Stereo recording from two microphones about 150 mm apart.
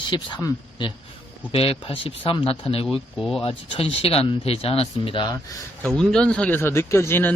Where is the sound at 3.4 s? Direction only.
40° left (ahead or behind).